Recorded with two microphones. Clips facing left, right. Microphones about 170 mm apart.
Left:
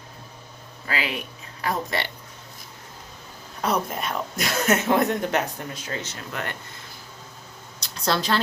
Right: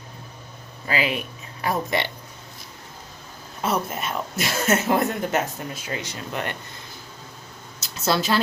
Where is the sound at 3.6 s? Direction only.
5° right (ahead or behind).